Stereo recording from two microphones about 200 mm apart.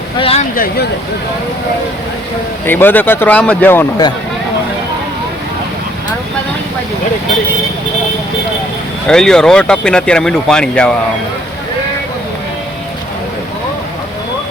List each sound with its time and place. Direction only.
0.2 s speech: 30° left (ahead or behind)
0.5 s speech: 45° left (ahead or behind)
2.6 s speech: 10° left (ahead or behind)
9.0 s speech: 5° left (ahead or behind)